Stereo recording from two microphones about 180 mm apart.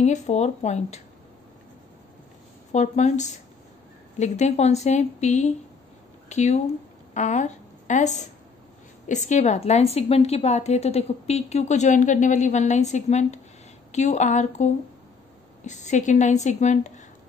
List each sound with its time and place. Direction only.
0.0 s a woman's voice: 40° left (ahead or behind)
2.7 s a woman's voice: 40° left (ahead or behind)